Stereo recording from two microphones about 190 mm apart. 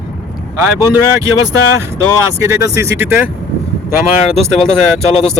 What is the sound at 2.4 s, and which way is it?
Speech, 15° right (ahead or behind).